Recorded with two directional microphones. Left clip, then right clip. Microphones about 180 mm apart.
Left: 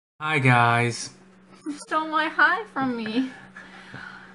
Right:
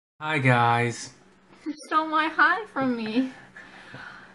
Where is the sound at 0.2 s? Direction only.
20° left (ahead or behind).